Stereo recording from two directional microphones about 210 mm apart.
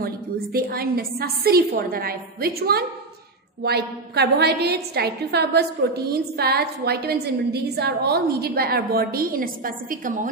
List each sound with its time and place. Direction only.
0.0 s a woman's voice: 45° right (ahead or behind)